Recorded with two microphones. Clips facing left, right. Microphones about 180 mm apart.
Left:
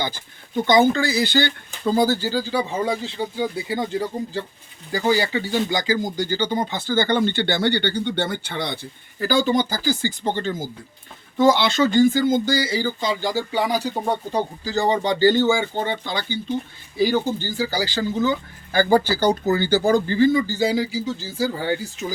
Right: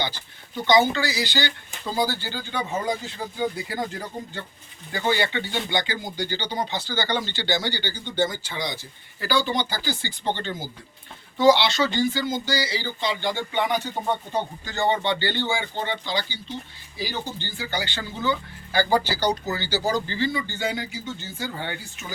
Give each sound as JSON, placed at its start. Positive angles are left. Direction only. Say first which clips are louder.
{"t": 0.5, "sound": "speech", "louder": "left 3 dB", "side_deg": 50}
{"t": 4.9, "sound": "speech", "louder": "left 4 dB", "side_deg": 35}
{"t": 9.2, "sound": "speech", "louder": "left 5 dB", "side_deg": 45}